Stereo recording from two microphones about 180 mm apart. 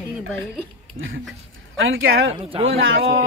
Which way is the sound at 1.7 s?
90° right.